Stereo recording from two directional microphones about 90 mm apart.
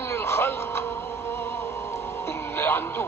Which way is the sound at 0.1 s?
30° left (ahead or behind).